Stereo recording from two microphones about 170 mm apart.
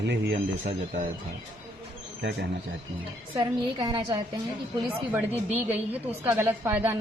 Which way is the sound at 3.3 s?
25° right (ahead or behind).